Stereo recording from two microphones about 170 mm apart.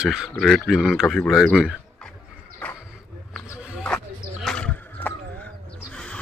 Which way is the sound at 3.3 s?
5° right (ahead or behind).